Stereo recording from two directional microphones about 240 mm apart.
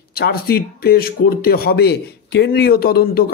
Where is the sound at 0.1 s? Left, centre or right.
Left.